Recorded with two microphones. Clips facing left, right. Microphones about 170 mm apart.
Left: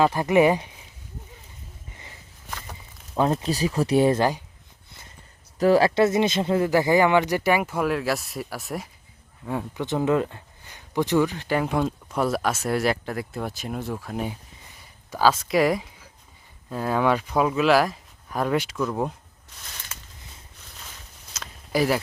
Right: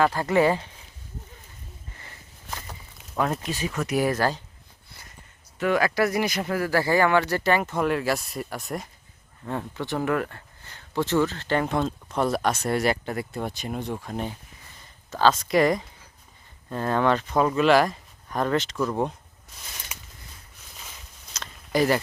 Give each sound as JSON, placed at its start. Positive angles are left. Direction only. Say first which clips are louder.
{"t": 0.0, "sound": "speech", "louder": "left 2 dB", "side_deg": 15}
{"t": 3.4, "sound": "speech", "louder": "left 5 dB", "side_deg": 35}
{"t": 5.5, "sound": "speech", "louder": "left 5 dB", "side_deg": 35}
{"t": 9.8, "sound": "speech", "louder": "left 4 dB", "side_deg": 20}
{"t": 19.9, "sound": "a sound", "louder": "even", "side_deg": -15}
{"t": 21.3, "sound": "a sound", "louder": "even", "side_deg": 5}